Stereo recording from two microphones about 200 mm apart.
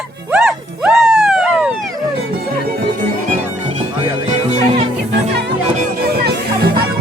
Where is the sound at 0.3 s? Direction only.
5° right (ahead or behind).